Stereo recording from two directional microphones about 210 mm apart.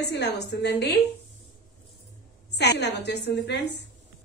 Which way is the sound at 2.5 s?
55° left (ahead or behind).